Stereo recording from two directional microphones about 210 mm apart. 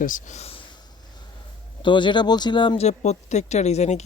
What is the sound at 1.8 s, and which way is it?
Speech, 20° left (ahead or behind).